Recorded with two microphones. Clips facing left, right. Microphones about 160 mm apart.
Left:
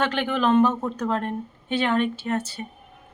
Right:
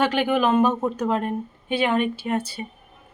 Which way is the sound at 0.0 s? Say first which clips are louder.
Right 3 dB; 10° right (ahead or behind).